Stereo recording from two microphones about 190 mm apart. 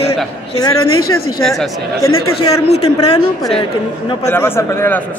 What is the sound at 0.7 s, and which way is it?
Speech, 90° left.